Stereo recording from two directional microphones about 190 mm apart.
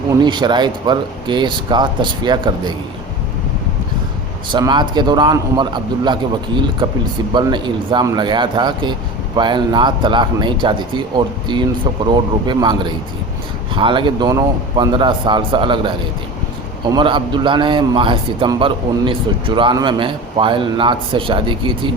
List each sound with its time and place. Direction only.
0.3 s a man's voice: 25° right (ahead or behind)
4.5 s a man's voice: 25° right (ahead or behind)
7.3 s a man's voice: 25° right (ahead or behind)